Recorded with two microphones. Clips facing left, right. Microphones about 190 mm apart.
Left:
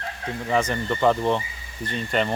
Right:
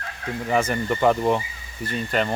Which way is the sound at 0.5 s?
10° right (ahead or behind).